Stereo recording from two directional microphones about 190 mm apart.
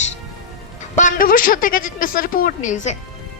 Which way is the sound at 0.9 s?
45° left (ahead or behind).